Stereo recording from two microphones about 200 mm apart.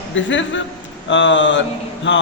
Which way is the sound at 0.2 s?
65° left (ahead or behind).